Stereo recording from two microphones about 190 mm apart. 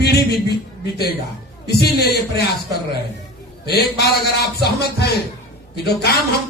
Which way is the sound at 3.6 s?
55° left (ahead or behind).